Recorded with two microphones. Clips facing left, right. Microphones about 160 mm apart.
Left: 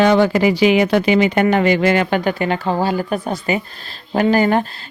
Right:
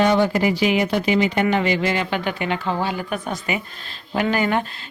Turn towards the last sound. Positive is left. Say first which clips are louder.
# left 6 dB
turn(degrees=40)  # may be behind; listen again after turning